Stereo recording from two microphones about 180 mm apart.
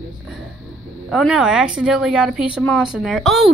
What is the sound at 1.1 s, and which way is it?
Speech, centre (ahead or behind).